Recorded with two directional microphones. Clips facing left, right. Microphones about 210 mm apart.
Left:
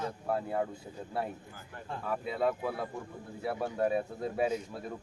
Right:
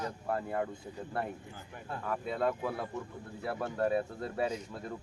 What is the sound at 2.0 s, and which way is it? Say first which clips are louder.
Speech: left 1 dB; 5° left (ahead or behind).